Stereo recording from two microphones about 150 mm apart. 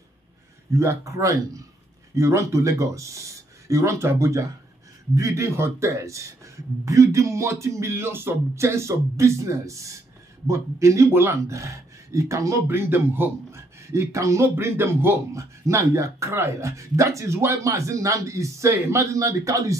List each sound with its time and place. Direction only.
0.7 s speech: 20° right (ahead or behind)